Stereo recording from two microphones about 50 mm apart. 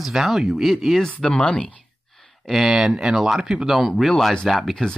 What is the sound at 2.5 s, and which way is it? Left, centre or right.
Speech, centre.